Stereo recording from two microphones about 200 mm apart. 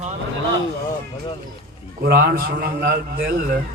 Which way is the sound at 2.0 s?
50° right (ahead or behind).